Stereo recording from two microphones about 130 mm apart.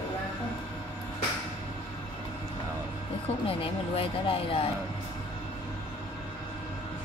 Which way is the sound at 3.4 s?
45° left (ahead or behind).